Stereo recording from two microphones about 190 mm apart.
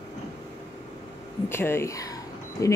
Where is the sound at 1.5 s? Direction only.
15° left (ahead or behind).